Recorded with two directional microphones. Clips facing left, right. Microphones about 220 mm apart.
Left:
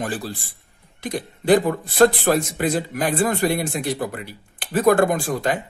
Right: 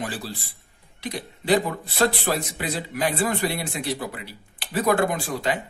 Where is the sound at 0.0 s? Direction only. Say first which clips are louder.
Left 4 dB; 50° left (ahead or behind).